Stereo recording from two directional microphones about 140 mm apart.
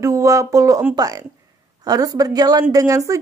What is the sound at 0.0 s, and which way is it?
A woman's voice, 25° right (ahead or behind).